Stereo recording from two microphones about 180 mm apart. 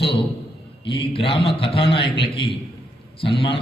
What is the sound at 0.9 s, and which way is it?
A man's voice, 30° left (ahead or behind).